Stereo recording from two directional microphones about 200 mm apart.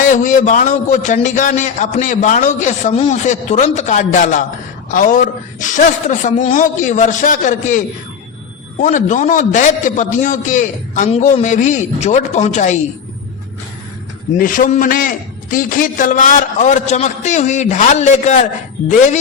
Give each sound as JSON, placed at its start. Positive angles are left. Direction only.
{"t": 0.0, "sound": "a man's voice", "side_deg": 40}
{"t": 8.8, "sound": "a man's voice", "side_deg": 40}
{"t": 14.3, "sound": "a man's voice", "side_deg": 45}